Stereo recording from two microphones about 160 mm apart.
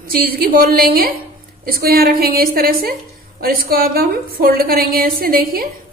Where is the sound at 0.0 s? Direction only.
65° right (ahead or behind).